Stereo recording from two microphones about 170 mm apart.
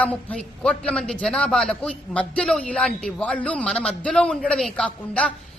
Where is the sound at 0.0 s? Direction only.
10° left (ahead or behind).